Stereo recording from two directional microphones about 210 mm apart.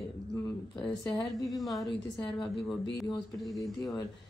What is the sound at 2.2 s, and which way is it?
Speech, 25° left (ahead or behind).